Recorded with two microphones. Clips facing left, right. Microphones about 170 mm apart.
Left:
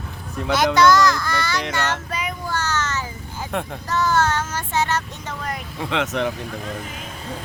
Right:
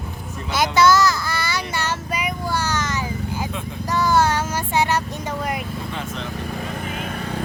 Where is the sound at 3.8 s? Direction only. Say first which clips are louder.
Right 2 dB; 10° right (ahead or behind).